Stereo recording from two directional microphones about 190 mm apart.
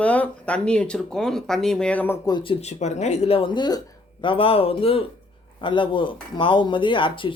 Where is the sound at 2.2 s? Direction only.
25° left (ahead or behind).